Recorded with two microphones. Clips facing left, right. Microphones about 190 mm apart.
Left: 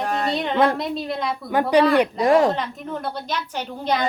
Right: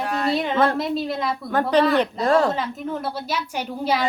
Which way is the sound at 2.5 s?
5° right (ahead or behind).